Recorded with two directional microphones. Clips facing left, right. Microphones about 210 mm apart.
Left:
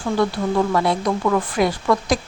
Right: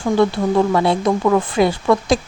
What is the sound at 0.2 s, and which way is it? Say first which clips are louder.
Speech: right 4 dB; 25° right (ahead or behind).